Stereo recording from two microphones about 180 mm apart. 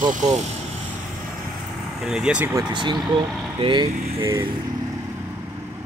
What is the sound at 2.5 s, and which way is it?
Speech, 25° right (ahead or behind).